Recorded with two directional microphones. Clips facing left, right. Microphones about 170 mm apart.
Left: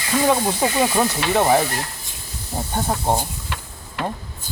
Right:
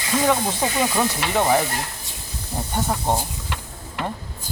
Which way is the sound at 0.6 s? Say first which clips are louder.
Left 3 dB; 20° left (ahead or behind).